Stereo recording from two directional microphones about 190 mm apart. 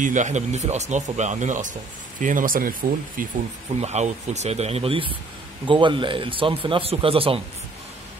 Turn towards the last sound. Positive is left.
turn(degrees=-30)  # may be behind; listen again after turning